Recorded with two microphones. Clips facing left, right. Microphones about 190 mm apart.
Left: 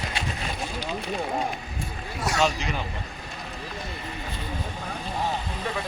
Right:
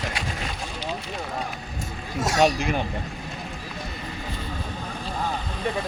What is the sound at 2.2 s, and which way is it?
Speech, 45° right (ahead or behind).